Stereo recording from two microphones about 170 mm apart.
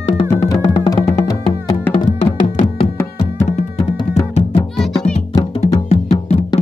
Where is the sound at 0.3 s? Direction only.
20° left (ahead or behind).